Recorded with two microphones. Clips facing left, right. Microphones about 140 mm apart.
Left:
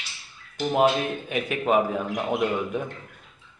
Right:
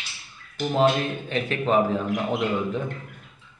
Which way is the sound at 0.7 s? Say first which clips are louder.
Even; 10° left (ahead or behind).